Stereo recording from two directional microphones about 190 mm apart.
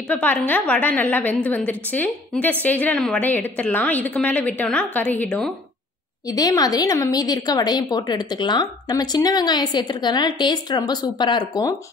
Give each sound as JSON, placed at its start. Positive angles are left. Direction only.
{"t": 0.1, "sound": "a woman's voice", "side_deg": 10}
{"t": 6.2, "sound": "a woman's voice", "side_deg": 20}